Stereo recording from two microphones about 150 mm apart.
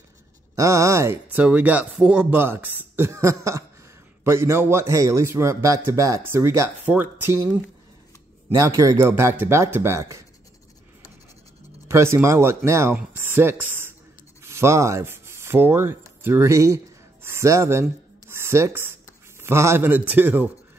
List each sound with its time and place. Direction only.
0.6 s speech: 20° right (ahead or behind)
11.9 s speech: 20° right (ahead or behind)
18.3 s writing: 15° right (ahead or behind)
19.4 s speech: 15° right (ahead or behind)